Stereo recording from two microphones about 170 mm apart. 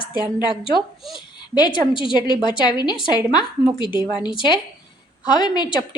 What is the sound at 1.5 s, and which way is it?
A woman's voice, 25° left (ahead or behind).